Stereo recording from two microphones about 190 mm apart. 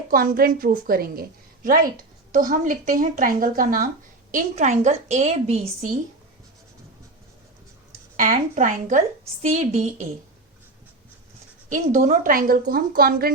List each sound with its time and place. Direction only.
0.1 s a woman's voice: 50° right (ahead or behind)
8.1 s a woman's voice: 45° right (ahead or behind)
11.7 s a woman's voice: 40° right (ahead or behind)